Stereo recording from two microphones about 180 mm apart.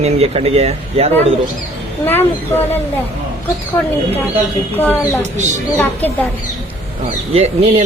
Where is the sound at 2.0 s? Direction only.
10° left (ahead or behind).